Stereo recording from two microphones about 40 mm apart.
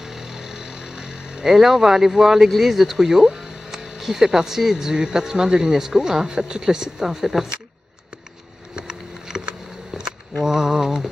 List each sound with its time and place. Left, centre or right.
0.0 s hum: centre
2.5 s speech: centre
8.7 s vehicle: centre
9.5 s a sound: centre